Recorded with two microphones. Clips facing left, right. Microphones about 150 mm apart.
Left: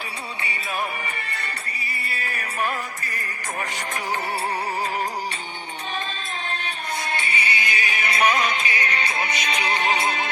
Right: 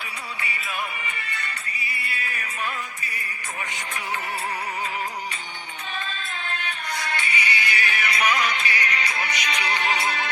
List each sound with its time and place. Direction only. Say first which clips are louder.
0.4 s music: left 3 dB; 35° left (ahead or behind)
6.1 s music: left 2 dB; 35° left (ahead or behind)